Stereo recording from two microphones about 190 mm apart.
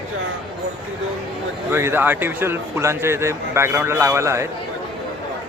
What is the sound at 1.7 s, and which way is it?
A man's voice, 10° right (ahead or behind).